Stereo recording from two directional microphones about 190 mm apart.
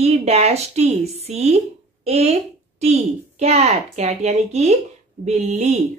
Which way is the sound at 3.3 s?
35° right (ahead or behind).